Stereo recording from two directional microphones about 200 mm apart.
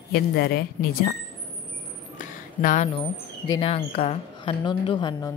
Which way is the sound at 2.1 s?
40° left (ahead or behind).